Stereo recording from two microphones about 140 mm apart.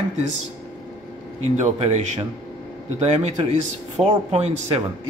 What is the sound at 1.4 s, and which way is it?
Speech, 50° right (ahead or behind).